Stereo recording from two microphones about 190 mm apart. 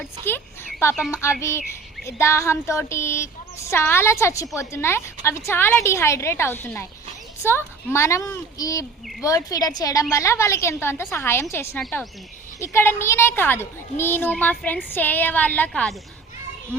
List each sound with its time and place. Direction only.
0.0 s a woman's voice: 10° left (ahead or behind)